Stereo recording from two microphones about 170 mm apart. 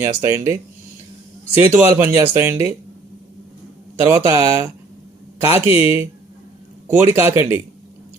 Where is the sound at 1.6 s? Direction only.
15° right (ahead or behind).